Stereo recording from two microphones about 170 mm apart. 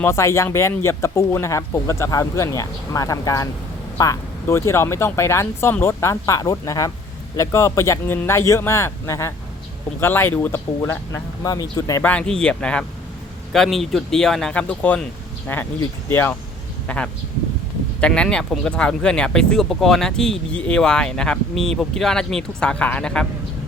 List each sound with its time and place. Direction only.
0.0 s speech: 15° left (ahead or behind)
12.0 s speech: 5° left (ahead or behind)